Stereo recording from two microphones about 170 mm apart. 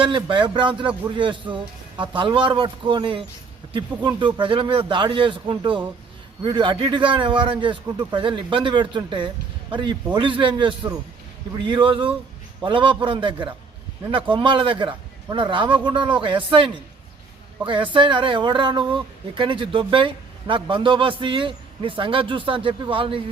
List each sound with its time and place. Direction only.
0.0 s speech: 30° right (ahead or behind)
17.9 s speech: 30° right (ahead or behind)